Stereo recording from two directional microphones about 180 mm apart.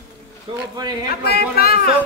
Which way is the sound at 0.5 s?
25° right (ahead or behind).